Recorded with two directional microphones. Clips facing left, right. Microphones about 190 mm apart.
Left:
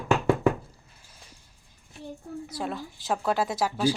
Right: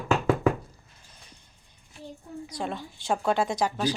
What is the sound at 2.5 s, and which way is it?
A woman's voice, 5° left (ahead or behind).